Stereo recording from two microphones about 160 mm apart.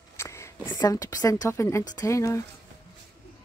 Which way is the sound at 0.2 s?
15° left (ahead or behind).